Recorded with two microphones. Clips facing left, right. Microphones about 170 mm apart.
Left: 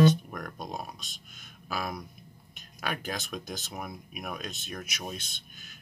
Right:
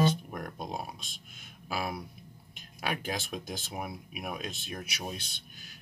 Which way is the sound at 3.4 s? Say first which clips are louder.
Right 1 dB; 30° right (ahead or behind).